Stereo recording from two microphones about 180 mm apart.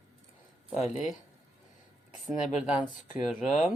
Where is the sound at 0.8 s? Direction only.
35° left (ahead or behind).